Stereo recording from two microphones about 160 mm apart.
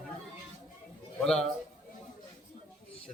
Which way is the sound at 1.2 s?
5° left (ahead or behind).